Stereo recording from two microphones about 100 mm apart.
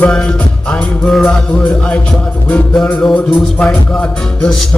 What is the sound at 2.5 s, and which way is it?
Music, 10° left (ahead or behind).